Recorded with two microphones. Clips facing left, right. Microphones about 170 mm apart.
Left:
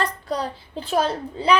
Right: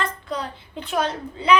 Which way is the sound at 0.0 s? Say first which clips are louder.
Left 3 dB; 35° left (ahead or behind).